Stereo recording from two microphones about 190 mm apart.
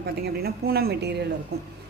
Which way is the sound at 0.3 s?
55° right (ahead or behind).